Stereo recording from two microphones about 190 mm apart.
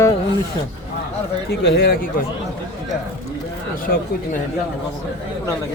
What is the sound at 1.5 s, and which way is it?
Speech, 55° left (ahead or behind).